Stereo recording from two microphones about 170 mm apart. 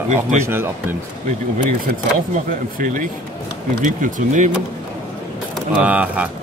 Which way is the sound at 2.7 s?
50° right (ahead or behind).